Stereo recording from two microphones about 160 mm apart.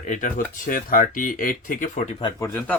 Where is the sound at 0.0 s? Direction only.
50° left (ahead or behind).